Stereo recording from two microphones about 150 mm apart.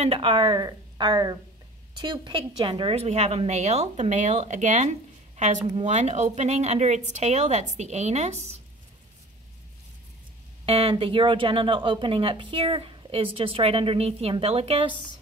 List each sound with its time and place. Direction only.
0.0 s a woman's voice: 40° right (ahead or behind)
10.6 s speech: 40° right (ahead or behind)